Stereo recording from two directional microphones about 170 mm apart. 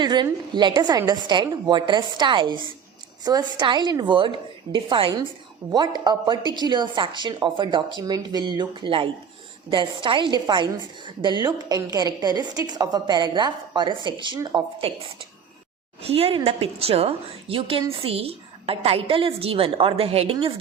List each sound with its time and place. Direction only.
0.0 s a woman's voice: 25° right (ahead or behind)